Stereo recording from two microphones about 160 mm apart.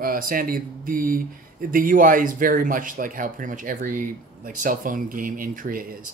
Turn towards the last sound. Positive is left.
turn(degrees=-60)  # may be behind; listen again after turning